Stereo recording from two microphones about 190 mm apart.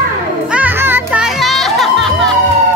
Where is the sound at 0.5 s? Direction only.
10° right (ahead or behind).